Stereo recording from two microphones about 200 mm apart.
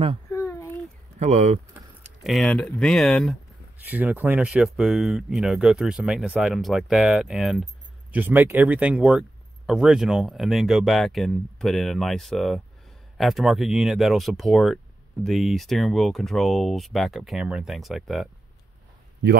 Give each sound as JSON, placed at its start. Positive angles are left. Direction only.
{"t": 0.3, "sound": "a sound", "side_deg": 15}
{"t": 1.2, "sound": "speech", "side_deg": -35}
{"t": 2.2, "sound": "speech", "side_deg": 0}